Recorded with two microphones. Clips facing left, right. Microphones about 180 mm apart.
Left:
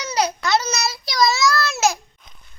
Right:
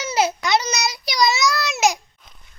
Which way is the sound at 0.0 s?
25° right (ahead or behind).